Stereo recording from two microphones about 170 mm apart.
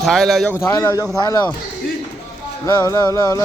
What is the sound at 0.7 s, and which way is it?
Music, 20° left (ahead or behind).